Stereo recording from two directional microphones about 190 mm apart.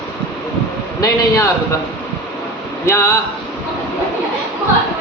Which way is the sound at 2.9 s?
15° left (ahead or behind).